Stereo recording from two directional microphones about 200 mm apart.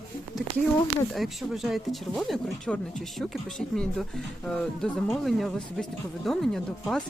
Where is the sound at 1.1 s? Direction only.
Centre (ahead or behind).